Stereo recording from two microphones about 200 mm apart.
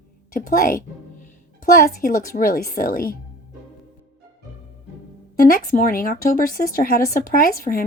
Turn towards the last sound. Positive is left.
turn(degrees=45)  # may be behind; listen again after turning